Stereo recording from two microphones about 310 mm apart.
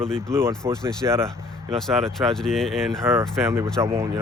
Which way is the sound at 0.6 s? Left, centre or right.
Centre.